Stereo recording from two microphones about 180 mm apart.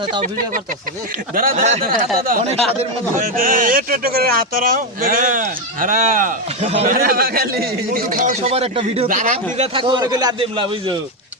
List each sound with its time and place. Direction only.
1.4 s speech: 55° right (ahead or behind)
1.6 s speech: 40° right (ahead or behind)
3.2 s speech: 50° right (ahead or behind)
6.6 s speech: 35° right (ahead or behind)
6.8 s speech: 55° right (ahead or behind); by 9.0 s 30° right (ahead or behind)
9.0 s speech: 45° right (ahead or behind)
9.7 s a man's voice: 25° right (ahead or behind)